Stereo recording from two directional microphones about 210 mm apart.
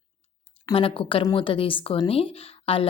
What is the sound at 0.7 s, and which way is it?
A woman's voice, 25° left (ahead or behind).